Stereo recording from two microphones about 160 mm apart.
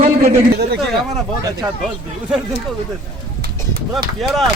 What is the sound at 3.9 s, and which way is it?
Speech, centre (ahead or behind).